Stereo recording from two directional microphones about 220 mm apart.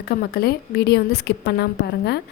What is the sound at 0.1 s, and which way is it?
A woman's voice, 45° left (ahead or behind).